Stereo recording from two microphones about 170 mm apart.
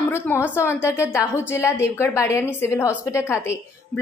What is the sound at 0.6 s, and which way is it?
A woman's voice, 15° left (ahead or behind).